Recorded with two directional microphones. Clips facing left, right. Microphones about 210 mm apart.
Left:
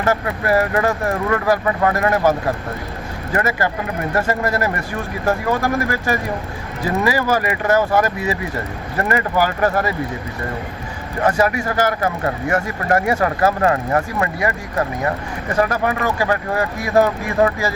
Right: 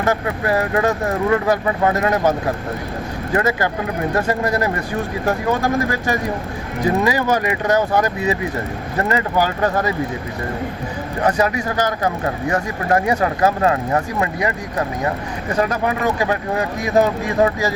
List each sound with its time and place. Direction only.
0.0 s speech: 15° right (ahead or behind)
3.3 s speech: 15° right (ahead or behind)
11.2 s speech: 20° right (ahead or behind)